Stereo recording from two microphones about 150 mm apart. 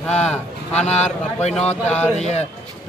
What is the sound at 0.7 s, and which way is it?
A man's voice, 45° left (ahead or behind).